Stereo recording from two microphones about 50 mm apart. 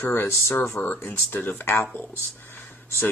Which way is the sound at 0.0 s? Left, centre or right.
Left.